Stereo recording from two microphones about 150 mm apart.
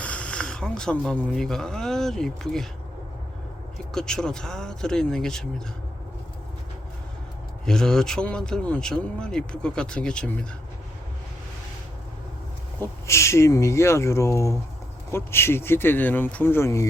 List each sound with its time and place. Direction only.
0.0 s speech: 10° left (ahead or behind)
3.9 s speech: 5° left (ahead or behind)
7.6 s speech: 5° left (ahead or behind)
12.8 s speech: 20° left (ahead or behind)